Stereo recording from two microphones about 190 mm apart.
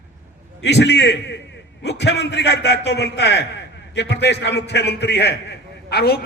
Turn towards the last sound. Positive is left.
turn(degrees=55)  # may be behind; listen again after turning